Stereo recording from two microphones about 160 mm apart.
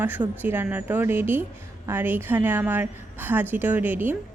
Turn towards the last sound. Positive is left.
turn(degrees=-10)  # may be behind; listen again after turning